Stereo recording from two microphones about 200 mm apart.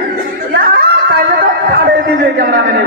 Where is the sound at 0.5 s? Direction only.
50° right (ahead or behind).